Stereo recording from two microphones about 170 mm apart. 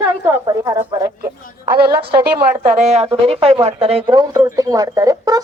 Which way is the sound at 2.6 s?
45° right (ahead or behind).